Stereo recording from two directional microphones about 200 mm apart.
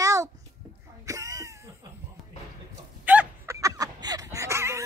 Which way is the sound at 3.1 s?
10° right (ahead or behind).